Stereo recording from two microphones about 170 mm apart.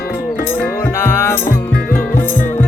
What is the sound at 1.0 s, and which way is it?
Music, 15° left (ahead or behind).